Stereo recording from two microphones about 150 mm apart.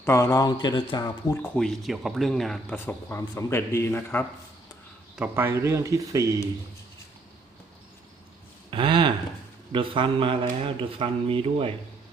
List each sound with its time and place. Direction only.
0.0 s speech: 15° left (ahead or behind)
1.0 s speech: 20° left (ahead or behind)
1.5 s speech: centre (ahead or behind)
2.7 s speech: 15° left (ahead or behind)
5.1 s speech: 10° right (ahead or behind)
8.7 s a sound: 35° right (ahead or behind)
9.7 s speech: 35° right (ahead or behind)